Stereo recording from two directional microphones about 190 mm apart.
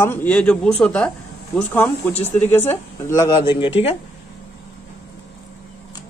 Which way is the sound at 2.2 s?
10° left (ahead or behind).